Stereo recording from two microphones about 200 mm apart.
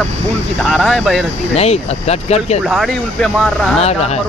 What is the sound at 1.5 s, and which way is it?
Speech, 30° left (ahead or behind).